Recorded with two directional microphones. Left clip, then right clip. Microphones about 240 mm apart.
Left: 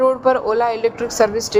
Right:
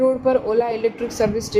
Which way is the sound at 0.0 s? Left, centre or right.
Centre.